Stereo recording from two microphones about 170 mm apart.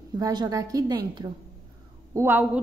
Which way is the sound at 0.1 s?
25° right (ahead or behind).